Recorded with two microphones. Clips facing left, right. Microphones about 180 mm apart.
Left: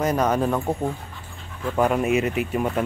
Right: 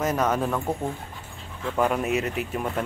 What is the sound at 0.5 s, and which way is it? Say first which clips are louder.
Speech: left 3 dB; 15° left (ahead or behind).